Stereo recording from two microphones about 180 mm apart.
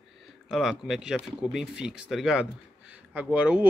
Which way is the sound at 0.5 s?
Centre (ahead or behind).